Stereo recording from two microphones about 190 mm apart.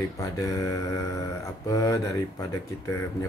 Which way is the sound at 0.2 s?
15° left (ahead or behind).